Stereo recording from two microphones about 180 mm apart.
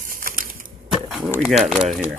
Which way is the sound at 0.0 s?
50° right (ahead or behind).